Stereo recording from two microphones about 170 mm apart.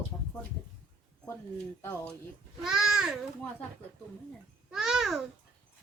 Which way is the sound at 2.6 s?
Centre (ahead or behind).